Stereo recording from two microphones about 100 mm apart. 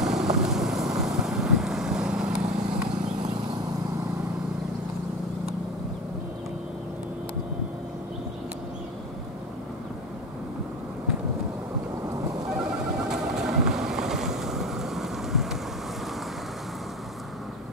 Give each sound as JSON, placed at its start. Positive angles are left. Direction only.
{"t": 0.0, "sound": "vehicle", "side_deg": -5}
{"t": 12.1, "sound": "vehicle", "side_deg": -35}
{"t": 12.4, "sound": "vehicle", "side_deg": -5}